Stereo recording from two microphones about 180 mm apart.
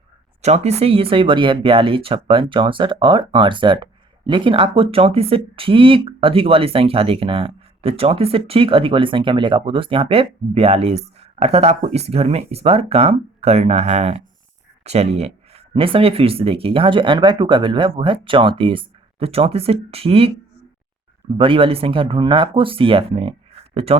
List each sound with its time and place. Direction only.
0.4 s speech: 35° right (ahead or behind)
21.3 s speech: 30° right (ahead or behind)